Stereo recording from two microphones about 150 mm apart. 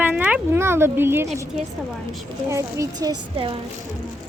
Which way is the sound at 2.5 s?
20° right (ahead or behind).